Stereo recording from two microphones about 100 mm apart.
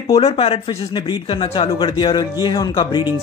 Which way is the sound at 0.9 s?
50° left (ahead or behind).